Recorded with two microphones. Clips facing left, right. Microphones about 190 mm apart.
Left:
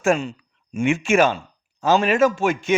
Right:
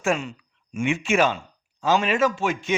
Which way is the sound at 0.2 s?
35° left (ahead or behind).